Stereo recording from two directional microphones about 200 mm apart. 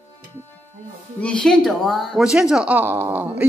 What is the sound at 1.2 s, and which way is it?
Speech, 5° left (ahead or behind).